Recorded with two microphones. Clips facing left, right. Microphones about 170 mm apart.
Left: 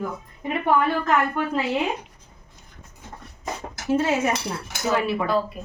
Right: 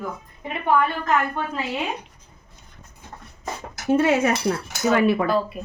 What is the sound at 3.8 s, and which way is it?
Cutlery, 60° right (ahead or behind).